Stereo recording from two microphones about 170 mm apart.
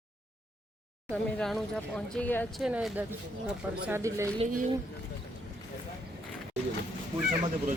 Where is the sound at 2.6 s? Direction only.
5° right (ahead or behind).